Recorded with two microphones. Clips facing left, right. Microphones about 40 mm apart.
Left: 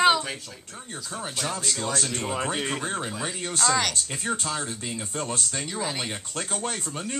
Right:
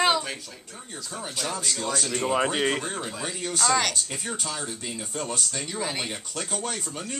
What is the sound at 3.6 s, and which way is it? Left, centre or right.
Speech, centre.